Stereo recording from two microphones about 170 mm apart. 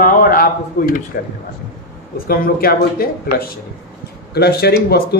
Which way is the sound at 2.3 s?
60° left (ahead or behind).